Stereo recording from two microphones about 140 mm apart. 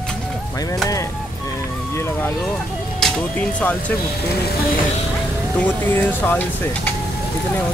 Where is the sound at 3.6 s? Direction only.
10° left (ahead or behind).